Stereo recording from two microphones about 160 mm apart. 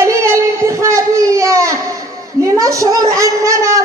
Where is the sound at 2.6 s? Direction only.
20° right (ahead or behind).